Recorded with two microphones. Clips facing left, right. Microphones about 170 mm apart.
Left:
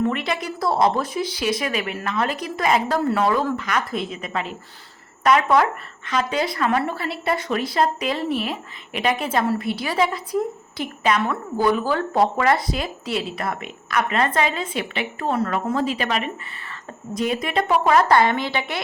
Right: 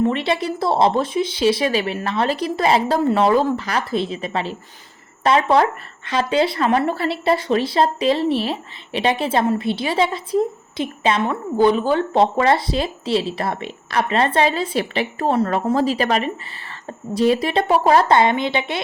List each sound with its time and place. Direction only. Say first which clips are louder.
0.0 s a woman's voice: right 4 dB; 25° right (ahead or behind)
18.1 s speech: right 2 dB; 20° right (ahead or behind)